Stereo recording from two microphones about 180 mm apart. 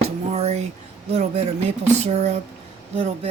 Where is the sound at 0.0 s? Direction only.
35° right (ahead or behind).